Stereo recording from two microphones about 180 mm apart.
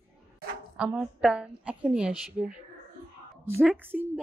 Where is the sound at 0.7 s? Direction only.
5° right (ahead or behind).